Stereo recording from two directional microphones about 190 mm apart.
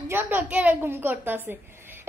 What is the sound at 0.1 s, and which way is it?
A woman's voice, 10° right (ahead or behind).